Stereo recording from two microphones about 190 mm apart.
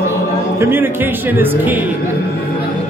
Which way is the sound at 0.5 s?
15° right (ahead or behind).